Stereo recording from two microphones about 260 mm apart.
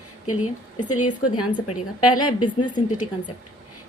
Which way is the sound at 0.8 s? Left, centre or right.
Left.